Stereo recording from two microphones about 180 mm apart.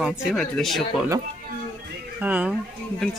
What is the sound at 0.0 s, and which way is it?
Speech, 5° right (ahead or behind).